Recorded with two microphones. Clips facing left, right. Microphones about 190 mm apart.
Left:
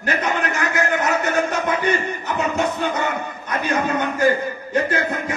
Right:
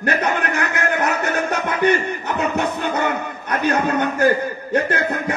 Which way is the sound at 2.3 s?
60° right (ahead or behind).